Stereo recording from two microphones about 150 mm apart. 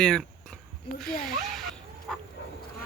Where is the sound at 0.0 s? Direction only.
5° left (ahead or behind).